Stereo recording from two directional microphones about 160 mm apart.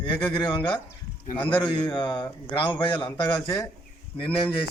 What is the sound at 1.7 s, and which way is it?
A man's voice, 25° left (ahead or behind).